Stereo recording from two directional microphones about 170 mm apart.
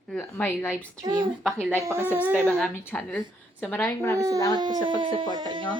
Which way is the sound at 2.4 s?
5° left (ahead or behind).